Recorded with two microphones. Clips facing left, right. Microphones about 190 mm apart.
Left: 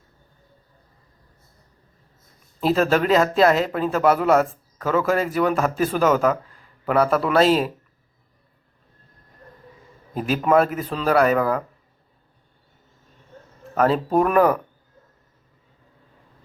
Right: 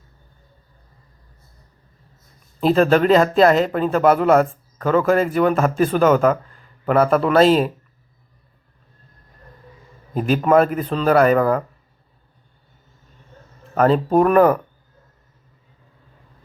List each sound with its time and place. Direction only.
2.6 s speech: centre (ahead or behind)
10.2 s speech: centre (ahead or behind)
13.7 s speech: centre (ahead or behind)